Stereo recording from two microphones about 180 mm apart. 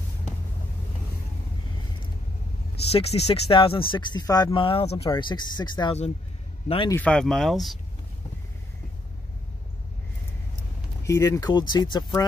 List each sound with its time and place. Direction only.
2.8 s speech: 35° left (ahead or behind)
6.9 s speech: 5° left (ahead or behind)
11.1 s speech: 15° left (ahead or behind)